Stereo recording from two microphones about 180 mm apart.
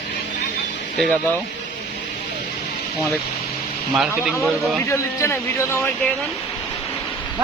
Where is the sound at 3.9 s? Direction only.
Centre (ahead or behind).